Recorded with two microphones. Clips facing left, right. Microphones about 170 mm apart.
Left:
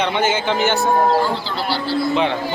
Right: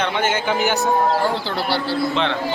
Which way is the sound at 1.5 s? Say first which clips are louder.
Even; 60° right (ahead or behind).